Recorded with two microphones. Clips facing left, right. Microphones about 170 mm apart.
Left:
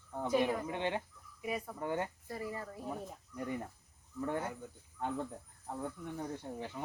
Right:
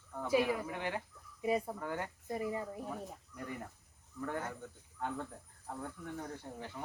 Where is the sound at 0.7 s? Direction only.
25° left (ahead or behind).